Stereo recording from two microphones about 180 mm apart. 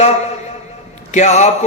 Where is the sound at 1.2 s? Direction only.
40° left (ahead or behind).